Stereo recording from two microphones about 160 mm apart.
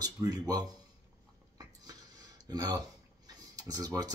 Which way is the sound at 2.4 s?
25° right (ahead or behind).